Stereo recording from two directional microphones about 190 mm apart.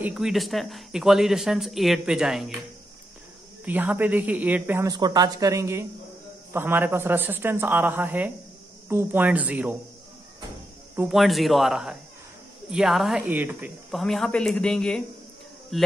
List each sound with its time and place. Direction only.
0.0 s speech: centre (ahead or behind)
3.6 s speech: 10° right (ahead or behind)
11.1 s speech: centre (ahead or behind)
13.8 s speech: centre (ahead or behind)